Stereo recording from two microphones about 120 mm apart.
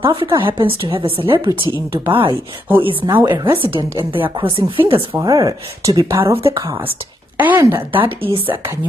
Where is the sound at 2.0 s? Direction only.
45° right (ahead or behind).